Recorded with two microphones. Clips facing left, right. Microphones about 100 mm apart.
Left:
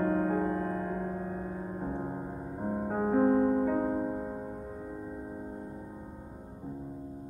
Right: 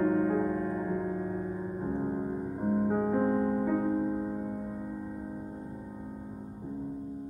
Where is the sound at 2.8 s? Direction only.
5° left (ahead or behind).